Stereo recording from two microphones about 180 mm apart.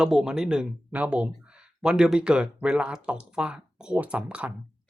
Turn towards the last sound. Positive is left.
turn(degrees=-5)  # may be behind; listen again after turning